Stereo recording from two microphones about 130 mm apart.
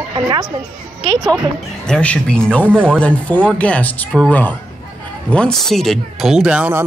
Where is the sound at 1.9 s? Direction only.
10° left (ahead or behind).